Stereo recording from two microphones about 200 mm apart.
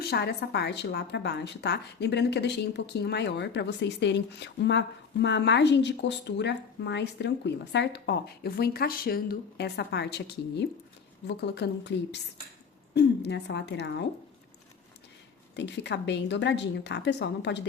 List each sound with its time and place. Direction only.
0.0 s a woman's voice: 55° left (ahead or behind)
15.5 s a woman's voice: 60° left (ahead or behind)